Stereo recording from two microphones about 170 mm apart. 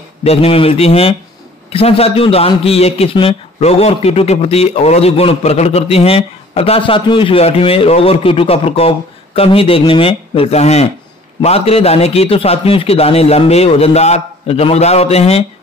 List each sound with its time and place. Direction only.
0.2 s a man's voice: 35° left (ahead or behind)